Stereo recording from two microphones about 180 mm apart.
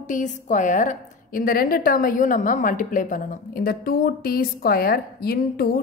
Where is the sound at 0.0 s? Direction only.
45° left (ahead or behind).